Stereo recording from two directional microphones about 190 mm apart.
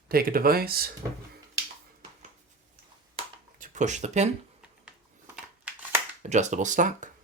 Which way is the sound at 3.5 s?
40° right (ahead or behind).